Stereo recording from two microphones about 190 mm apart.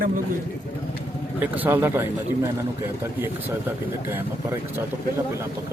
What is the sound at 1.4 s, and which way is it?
A man's voice, 10° right (ahead or behind).